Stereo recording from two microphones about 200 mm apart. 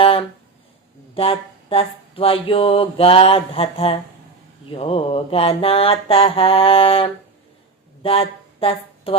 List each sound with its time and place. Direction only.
0.0 s a sound: 25° left (ahead or behind)
1.1 s mantra: 30° left (ahead or behind)
8.0 s speech: 30° left (ahead or behind)